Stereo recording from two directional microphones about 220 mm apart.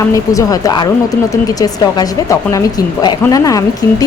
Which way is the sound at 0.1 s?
15° left (ahead or behind).